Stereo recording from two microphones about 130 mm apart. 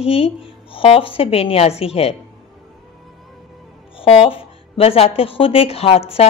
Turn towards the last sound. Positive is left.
turn(degrees=50)  # may be behind; listen again after turning